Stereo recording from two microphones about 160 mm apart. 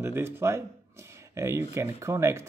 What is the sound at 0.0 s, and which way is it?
Speech, 15° right (ahead or behind).